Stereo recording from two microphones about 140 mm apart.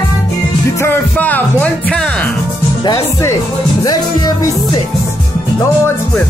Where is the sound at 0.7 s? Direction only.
15° left (ahead or behind).